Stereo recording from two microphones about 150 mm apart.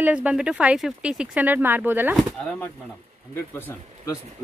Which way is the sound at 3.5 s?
15° left (ahead or behind).